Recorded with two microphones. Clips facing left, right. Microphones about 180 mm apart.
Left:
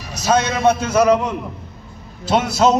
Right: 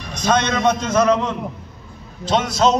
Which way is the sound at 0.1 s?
5° left (ahead or behind).